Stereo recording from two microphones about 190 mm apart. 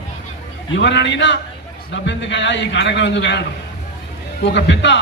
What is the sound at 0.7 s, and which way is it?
A man's voice, 70° left (ahead or behind).